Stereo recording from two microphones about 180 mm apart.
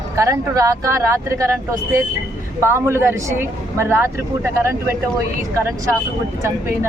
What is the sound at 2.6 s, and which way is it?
A woman's voice, 15° right (ahead or behind).